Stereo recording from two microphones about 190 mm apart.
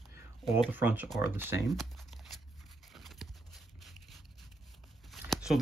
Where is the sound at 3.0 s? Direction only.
Centre (ahead or behind).